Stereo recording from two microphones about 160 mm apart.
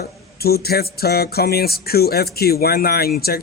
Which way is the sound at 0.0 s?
75° left (ahead or behind).